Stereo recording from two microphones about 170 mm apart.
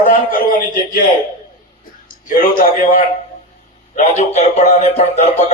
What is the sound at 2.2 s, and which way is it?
Speech, 55° left (ahead or behind).